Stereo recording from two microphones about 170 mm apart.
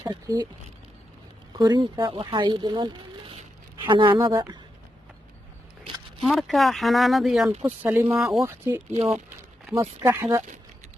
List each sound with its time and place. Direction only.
0.0 s speech: 25° right (ahead or behind)
1.6 s speech: 25° right (ahead or behind)
6.2 s speech: centre (ahead or behind)
7.6 s speech: 10° right (ahead or behind)